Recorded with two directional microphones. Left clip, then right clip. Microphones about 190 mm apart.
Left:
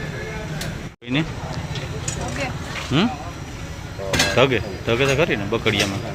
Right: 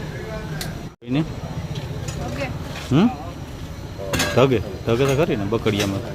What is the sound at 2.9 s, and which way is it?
Speech, 40° right (ahead or behind).